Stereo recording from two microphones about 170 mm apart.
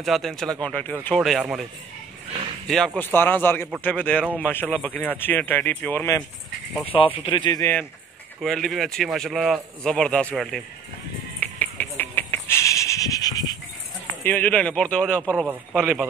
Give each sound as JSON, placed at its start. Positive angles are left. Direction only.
{"t": 0.0, "sound": "a man's voice", "side_deg": 0}
{"t": 6.9, "sound": "speech", "side_deg": 30}
{"t": 8.4, "sound": "a man's voice", "side_deg": 0}
{"t": 11.3, "sound": "a sound", "side_deg": 10}
{"t": 14.2, "sound": "speech", "side_deg": 10}
{"t": 15.3, "sound": "a man's voice", "side_deg": -5}